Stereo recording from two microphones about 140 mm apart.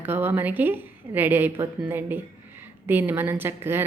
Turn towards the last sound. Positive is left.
turn(degrees=-15)  # may be behind; listen again after turning